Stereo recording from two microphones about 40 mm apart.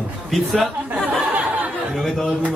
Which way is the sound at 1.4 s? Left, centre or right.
Right.